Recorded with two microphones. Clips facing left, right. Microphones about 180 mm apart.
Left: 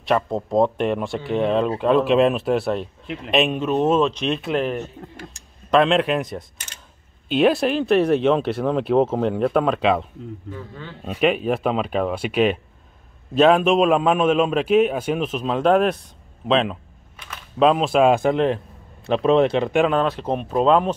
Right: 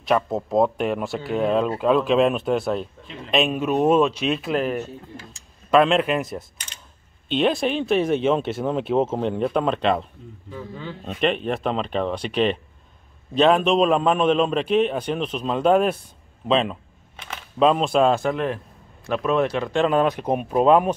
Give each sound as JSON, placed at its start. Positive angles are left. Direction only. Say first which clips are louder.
{"t": 0.0, "sound": "speech", "louder": "even", "side_deg": 0}
{"t": 3.6, "sound": "speech", "louder": "even", "side_deg": -10}
{"t": 11.1, "sound": "speech", "louder": "left 3 dB", "side_deg": 5}
{"t": 18.1, "sound": "a man's voice", "louder": "left 4 dB", "side_deg": 20}
{"t": 19.9, "sound": "speech", "louder": "right 1 dB", "side_deg": -15}